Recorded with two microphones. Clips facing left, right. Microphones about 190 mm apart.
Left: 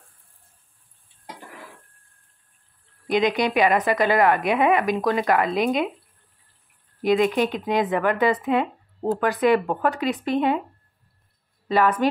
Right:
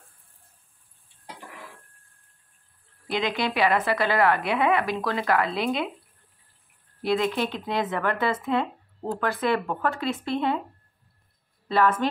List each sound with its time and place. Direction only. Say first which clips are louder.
3.1 s a woman's voice: left 6 dB; 15° left (ahead or behind)
7.0 s a woman's voice: left 5 dB; 15° left (ahead or behind)
11.7 s a woman's voice: left 3 dB; 15° left (ahead or behind)